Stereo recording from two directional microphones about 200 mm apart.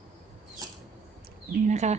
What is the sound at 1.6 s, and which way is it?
Speech, 35° right (ahead or behind).